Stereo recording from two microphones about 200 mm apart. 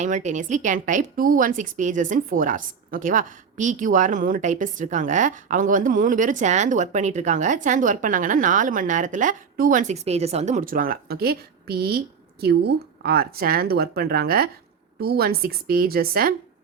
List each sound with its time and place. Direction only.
0.0 s a woman's voice: 35° right (ahead or behind)